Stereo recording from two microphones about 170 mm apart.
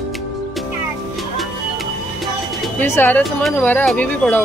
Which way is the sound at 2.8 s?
15° left (ahead or behind).